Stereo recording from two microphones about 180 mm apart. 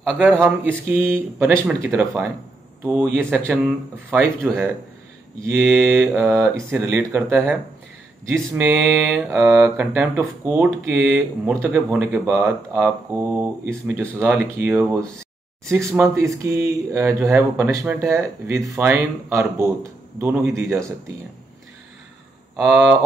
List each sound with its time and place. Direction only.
0.0 s speech: 10° right (ahead or behind)
8.5 s speech: 10° right (ahead or behind)
22.6 s speech: 5° right (ahead or behind)